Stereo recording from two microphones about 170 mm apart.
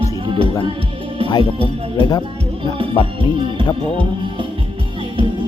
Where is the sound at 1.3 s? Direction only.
30° left (ahead or behind).